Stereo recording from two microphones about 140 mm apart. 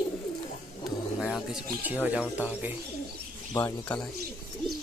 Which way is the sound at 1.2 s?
5° right (ahead or behind).